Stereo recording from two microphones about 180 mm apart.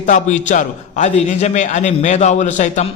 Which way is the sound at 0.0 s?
45° left (ahead or behind).